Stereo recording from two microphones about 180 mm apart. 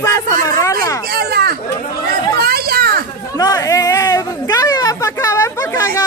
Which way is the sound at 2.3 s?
60° right (ahead or behind).